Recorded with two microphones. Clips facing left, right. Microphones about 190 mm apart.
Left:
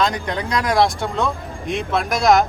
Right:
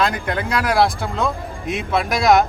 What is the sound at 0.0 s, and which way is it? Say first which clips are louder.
Speech: even; 5° right (ahead or behind).